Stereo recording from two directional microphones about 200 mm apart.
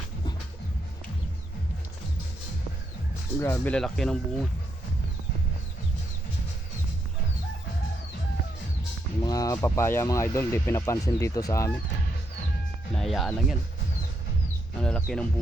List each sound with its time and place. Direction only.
3.4 s speech: 10° left (ahead or behind)
9.2 s speech: 20° left (ahead or behind)
12.9 s speech: centre (ahead or behind)
14.8 s speech: 5° left (ahead or behind)